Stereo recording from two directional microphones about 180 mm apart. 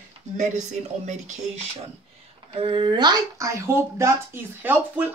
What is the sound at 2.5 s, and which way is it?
A child's voice, 30° right (ahead or behind).